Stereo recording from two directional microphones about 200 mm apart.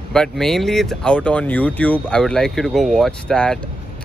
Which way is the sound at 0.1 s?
5° left (ahead or behind).